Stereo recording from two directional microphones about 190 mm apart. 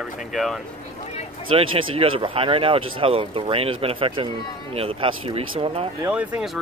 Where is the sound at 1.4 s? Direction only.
30° right (ahead or behind).